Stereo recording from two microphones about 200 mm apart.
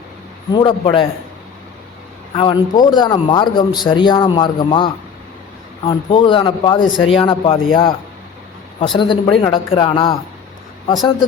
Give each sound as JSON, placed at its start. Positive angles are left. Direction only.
{"t": 0.5, "sound": "a man's voice", "side_deg": 25}
{"t": 2.3, "sound": "a man's voice", "side_deg": 25}